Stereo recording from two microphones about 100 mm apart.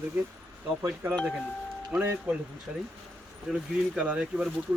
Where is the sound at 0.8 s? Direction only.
25° right (ahead or behind).